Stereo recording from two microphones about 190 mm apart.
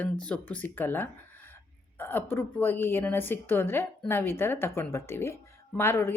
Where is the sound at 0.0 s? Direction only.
5° left (ahead or behind).